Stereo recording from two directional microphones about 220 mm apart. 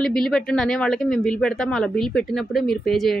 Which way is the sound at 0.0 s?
Centre (ahead or behind).